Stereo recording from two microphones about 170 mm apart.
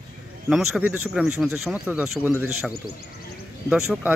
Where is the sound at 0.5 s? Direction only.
5° right (ahead or behind).